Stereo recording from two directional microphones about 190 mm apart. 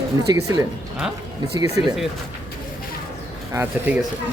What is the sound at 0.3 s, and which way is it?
Speech, 15° right (ahead or behind).